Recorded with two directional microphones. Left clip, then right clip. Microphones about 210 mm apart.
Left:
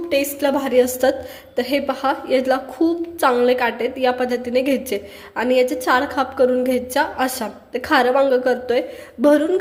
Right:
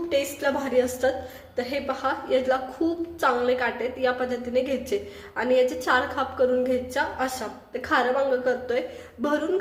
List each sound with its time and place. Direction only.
0.1 s a woman's voice: 35° left (ahead or behind)